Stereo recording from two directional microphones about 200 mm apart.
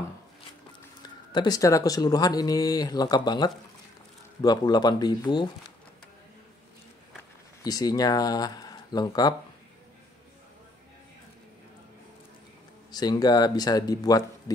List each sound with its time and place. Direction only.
1.3 s speech: 20° left (ahead or behind)
7.6 s speech: 20° left (ahead or behind)
12.9 s speech: 20° left (ahead or behind)